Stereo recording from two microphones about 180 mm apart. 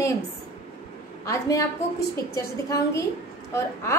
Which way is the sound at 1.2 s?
15° left (ahead or behind).